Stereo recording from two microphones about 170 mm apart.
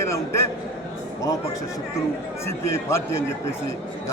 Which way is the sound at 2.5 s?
15° left (ahead or behind).